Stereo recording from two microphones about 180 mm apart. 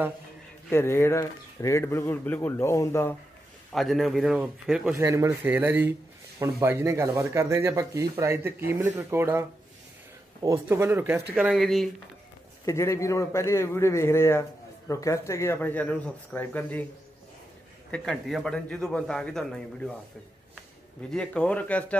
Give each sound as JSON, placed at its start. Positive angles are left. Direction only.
{"t": 0.7, "sound": "speech", "side_deg": 15}
{"t": 3.7, "sound": "a man's voice", "side_deg": 0}
{"t": 4.9, "sound": "a man's voice", "side_deg": -15}
{"t": 12.6, "sound": "speech", "side_deg": 15}
{"t": 17.9, "sound": "a man's voice", "side_deg": 5}
{"t": 21.1, "sound": "a man's voice", "side_deg": 5}